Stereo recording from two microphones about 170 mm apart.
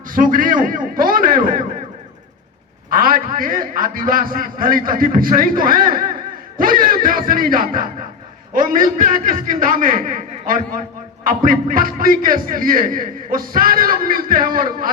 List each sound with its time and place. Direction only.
0.1 s a man's voice: 55° right (ahead or behind)
2.9 s a man's voice: 55° right (ahead or behind)